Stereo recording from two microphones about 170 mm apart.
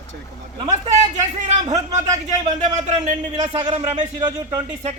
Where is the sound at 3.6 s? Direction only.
30° right (ahead or behind).